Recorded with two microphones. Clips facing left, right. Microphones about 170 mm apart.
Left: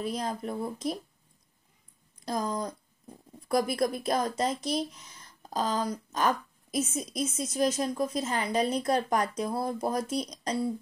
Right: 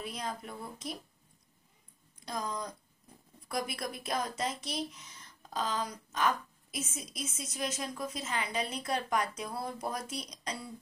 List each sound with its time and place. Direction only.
0.0 s a woman's voice: 35° left (ahead or behind)
2.2 s a woman's voice: 40° left (ahead or behind)